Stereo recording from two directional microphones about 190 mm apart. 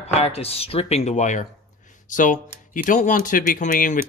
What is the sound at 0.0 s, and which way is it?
Speech, 30° left (ahead or behind).